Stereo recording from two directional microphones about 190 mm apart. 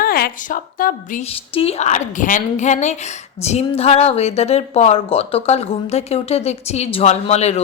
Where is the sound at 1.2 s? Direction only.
30° left (ahead or behind).